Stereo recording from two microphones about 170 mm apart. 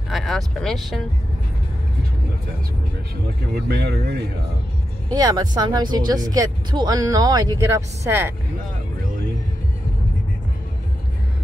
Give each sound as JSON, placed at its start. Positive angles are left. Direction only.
{"t": 0.1, "sound": "speech", "side_deg": 0}
{"t": 3.6, "sound": "speech", "side_deg": -70}
{"t": 5.1, "sound": "speech", "side_deg": -20}